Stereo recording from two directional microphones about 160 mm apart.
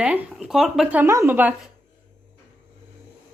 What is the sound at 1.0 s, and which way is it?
Speech, 15° right (ahead or behind).